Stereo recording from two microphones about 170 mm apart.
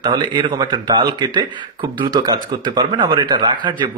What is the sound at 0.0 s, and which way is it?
Speech, 25° right (ahead or behind).